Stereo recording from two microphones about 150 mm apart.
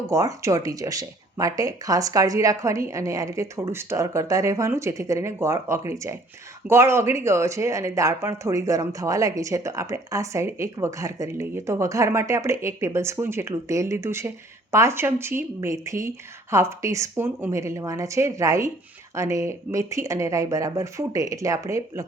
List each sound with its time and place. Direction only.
0.1 s speech: 20° right (ahead or behind)